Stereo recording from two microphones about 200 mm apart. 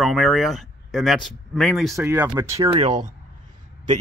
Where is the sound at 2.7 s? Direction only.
30° right (ahead or behind).